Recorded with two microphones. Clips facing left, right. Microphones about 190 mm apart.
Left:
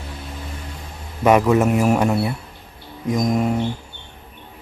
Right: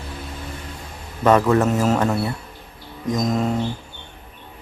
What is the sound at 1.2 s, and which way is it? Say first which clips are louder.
Speech: left 1 dB; 10° left (ahead or behind).